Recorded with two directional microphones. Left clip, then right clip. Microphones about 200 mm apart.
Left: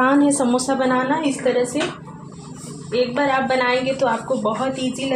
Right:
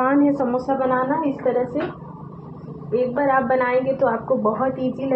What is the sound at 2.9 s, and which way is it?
A woman's voice, 30° left (ahead or behind).